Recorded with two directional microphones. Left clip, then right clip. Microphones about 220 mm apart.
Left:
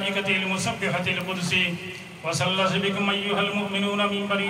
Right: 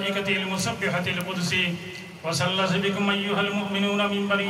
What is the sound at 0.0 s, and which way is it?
A man's voice, 20° right (ahead or behind).